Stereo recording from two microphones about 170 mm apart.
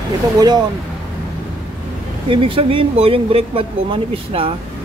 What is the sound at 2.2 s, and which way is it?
Speech, 30° right (ahead or behind).